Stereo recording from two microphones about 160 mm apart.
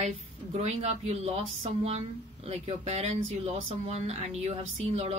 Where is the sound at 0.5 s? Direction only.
40° right (ahead or behind).